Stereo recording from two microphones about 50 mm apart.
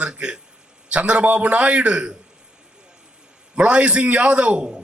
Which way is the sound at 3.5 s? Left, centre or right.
Right.